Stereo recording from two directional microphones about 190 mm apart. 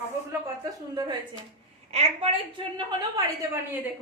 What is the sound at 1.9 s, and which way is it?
A woman's voice, 35° right (ahead or behind).